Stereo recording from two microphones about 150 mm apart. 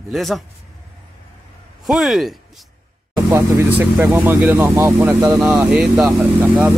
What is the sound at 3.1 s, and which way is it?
Speech, 15° right (ahead or behind).